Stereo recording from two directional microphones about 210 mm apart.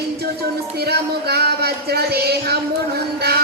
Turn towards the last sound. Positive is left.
turn(degrees=-50)  # may be behind; listen again after turning